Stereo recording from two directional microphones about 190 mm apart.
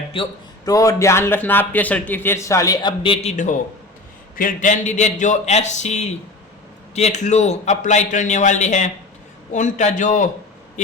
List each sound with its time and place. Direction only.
0.1 s a man's voice: 25° left (ahead or behind)
3.3 s a man's voice: 40° left (ahead or behind)